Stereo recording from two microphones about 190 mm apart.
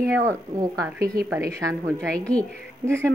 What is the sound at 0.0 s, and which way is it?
A woman's voice, 15° right (ahead or behind).